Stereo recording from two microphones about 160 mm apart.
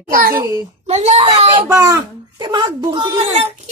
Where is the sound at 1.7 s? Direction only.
20° right (ahead or behind).